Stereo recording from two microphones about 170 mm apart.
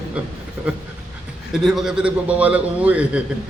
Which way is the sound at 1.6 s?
Centre (ahead or behind).